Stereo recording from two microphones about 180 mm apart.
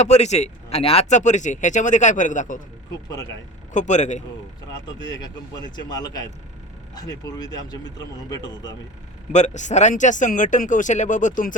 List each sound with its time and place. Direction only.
0.0 s speech: 40° left (ahead or behind)
3.7 s speech: 40° left (ahead or behind)
4.9 s speech: 20° left (ahead or behind)
9.3 s speech: 40° left (ahead or behind)